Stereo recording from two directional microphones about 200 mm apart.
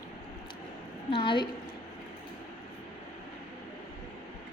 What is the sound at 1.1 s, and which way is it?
Speech, 25° left (ahead or behind).